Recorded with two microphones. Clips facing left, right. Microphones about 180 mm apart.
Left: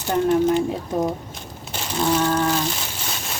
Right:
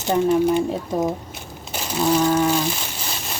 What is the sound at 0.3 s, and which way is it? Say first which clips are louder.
A woman's voice: left 1 dB; 10° right (ahead or behind).